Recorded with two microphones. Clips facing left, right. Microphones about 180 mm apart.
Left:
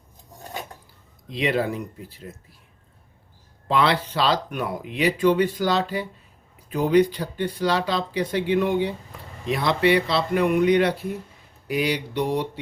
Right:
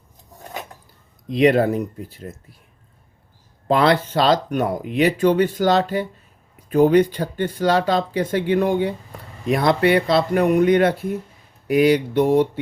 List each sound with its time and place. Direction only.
1.3 s speech: 50° right (ahead or behind)
3.7 s speech: 45° right (ahead or behind)